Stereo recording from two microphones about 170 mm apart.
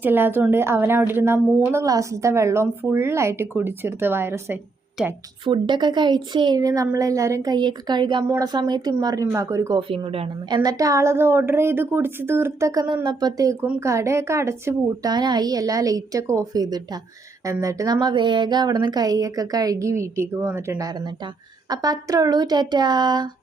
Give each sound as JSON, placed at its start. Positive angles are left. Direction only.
{"t": 0.0, "sound": "a woman's voice", "side_deg": -10}
{"t": 5.5, "sound": "a woman's voice", "side_deg": -25}
{"t": 9.9, "sound": "speech", "side_deg": -35}
{"t": 10.6, "sound": "a woman's voice", "side_deg": -20}